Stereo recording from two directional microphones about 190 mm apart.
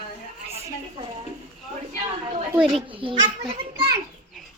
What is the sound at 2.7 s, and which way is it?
Speech, 25° right (ahead or behind).